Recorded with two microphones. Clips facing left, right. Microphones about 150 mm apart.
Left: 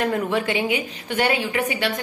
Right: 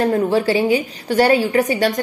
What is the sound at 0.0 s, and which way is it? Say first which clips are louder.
A woman's voice: right 6 dB; 35° right (ahead or behind).